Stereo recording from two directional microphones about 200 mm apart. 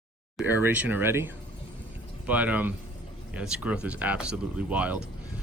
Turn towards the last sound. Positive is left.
turn(degrees=-5)  # may be behind; listen again after turning